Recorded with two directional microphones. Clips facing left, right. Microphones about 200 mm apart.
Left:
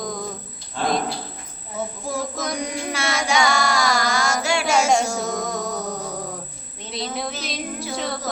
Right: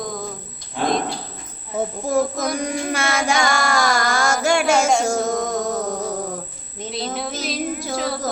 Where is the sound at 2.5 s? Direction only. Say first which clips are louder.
Right 4 dB; 55° right (ahead or behind).